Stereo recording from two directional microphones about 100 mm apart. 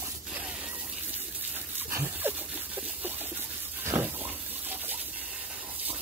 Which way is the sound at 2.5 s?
15° right (ahead or behind).